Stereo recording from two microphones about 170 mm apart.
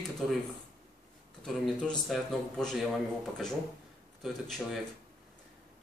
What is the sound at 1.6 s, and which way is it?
Speech, centre (ahead or behind).